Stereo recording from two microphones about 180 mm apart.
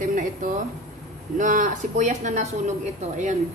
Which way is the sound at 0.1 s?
45° right (ahead or behind).